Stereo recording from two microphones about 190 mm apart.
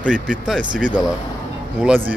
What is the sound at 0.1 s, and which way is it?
Speech, 5° right (ahead or behind).